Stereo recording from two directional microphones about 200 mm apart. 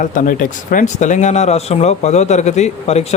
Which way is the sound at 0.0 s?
40° left (ahead or behind).